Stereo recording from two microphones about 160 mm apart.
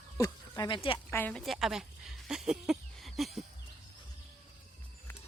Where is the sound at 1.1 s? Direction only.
10° left (ahead or behind).